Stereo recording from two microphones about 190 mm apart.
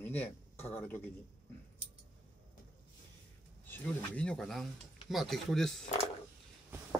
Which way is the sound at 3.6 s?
10° left (ahead or behind).